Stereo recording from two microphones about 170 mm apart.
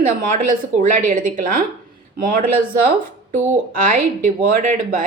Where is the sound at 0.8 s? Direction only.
50° right (ahead or behind).